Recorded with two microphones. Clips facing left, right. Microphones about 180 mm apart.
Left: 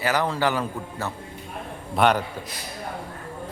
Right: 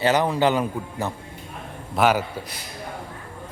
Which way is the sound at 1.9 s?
5° right (ahead or behind).